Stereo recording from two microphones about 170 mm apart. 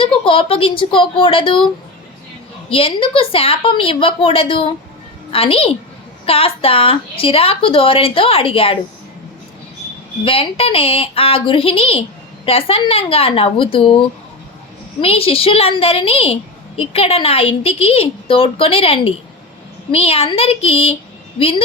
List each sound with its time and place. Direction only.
0.0 s a woman's voice: 30° left (ahead or behind)
2.6 s a woman's voice: 35° left (ahead or behind)
10.2 s a woman's voice: 35° left (ahead or behind)
15.0 s a woman's voice: 35° left (ahead or behind)